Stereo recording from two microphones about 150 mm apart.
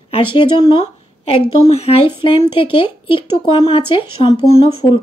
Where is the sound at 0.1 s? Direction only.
35° left (ahead or behind).